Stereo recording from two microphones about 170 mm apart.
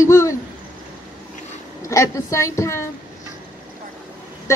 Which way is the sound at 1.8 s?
20° left (ahead or behind).